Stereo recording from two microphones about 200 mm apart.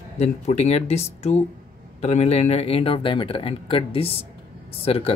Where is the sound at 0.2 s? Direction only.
35° left (ahead or behind).